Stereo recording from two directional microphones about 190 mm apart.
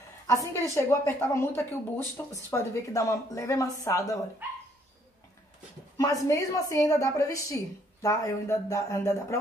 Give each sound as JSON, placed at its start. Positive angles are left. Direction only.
{"t": 0.3, "sound": "a woman's voice", "side_deg": 15}
{"t": 5.9, "sound": "a woman's voice", "side_deg": 15}